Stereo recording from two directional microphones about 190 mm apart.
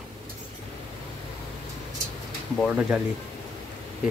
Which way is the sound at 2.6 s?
5° right (ahead or behind).